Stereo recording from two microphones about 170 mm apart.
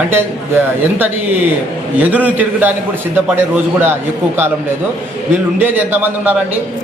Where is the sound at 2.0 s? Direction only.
10° right (ahead or behind).